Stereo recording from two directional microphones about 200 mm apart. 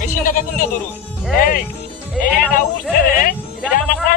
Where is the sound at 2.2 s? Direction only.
Centre (ahead or behind).